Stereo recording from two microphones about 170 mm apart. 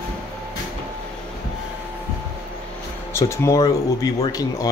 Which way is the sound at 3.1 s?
15° left (ahead or behind).